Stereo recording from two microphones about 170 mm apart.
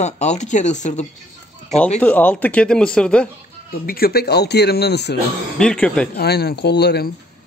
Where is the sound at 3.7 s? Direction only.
60° left (ahead or behind); by 5.1 s 75° left (ahead or behind).